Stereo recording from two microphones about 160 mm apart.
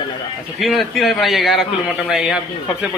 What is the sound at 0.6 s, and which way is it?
A man's voice, centre (ahead or behind).